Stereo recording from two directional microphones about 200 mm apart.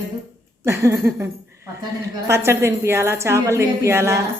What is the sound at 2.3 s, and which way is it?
A woman's voice, 15° right (ahead or behind).